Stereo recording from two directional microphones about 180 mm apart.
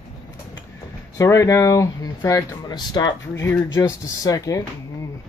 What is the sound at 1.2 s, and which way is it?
Speech, 15° left (ahead or behind).